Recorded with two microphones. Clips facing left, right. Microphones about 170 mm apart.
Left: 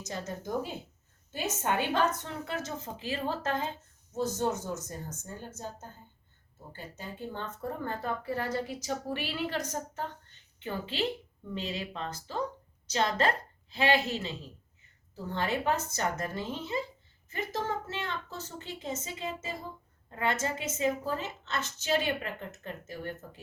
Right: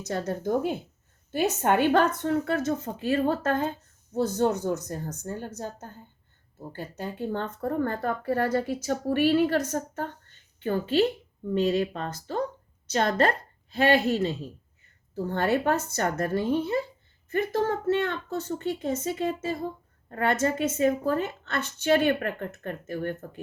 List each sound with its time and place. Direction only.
0.0 s a woman's voice: 55° right (ahead or behind)
6.7 s a woman's voice: 60° right (ahead or behind)